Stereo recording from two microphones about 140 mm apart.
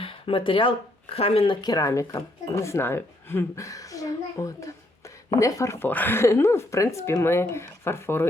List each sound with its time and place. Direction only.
0.0 s a sound: 40° left (ahead or behind)
1.1 s speech: 45° left (ahead or behind)
1.6 s speech: 25° left (ahead or behind)